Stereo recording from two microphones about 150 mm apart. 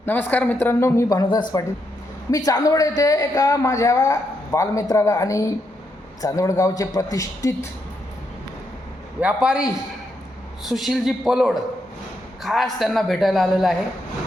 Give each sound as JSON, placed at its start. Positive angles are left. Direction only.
{"t": 0.0, "sound": "speech", "side_deg": 15}
{"t": 9.2, "sound": "a man's voice", "side_deg": -5}